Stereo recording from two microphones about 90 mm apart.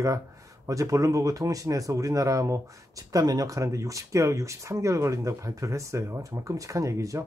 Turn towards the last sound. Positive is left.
turn(degrees=-35)  # may be behind; listen again after turning